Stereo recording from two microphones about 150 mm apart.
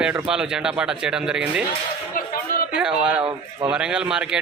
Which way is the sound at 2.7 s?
5° right (ahead or behind).